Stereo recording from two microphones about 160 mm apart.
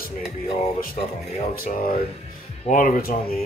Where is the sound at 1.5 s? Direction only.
60° left (ahead or behind).